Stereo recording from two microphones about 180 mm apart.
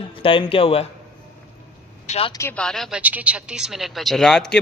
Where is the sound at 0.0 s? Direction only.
30° left (ahead or behind).